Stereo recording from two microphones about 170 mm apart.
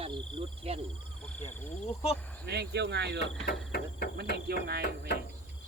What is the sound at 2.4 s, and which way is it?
Speech, 75° right (ahead or behind).